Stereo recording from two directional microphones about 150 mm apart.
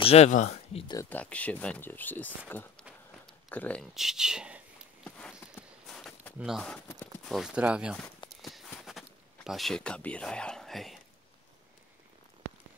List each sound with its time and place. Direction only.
0.0 s speech: 45° left (ahead or behind)
1.1 s speech: 10° left (ahead or behind)
3.9 s speech: centre (ahead or behind)
5.0 s a sound: 10° left (ahead or behind)
5.9 s walk: 5° left (ahead or behind)
7.2 s speech: 5° right (ahead or behind)
8.4 s clip-clop: centre (ahead or behind)
8.7 s speech: centre (ahead or behind)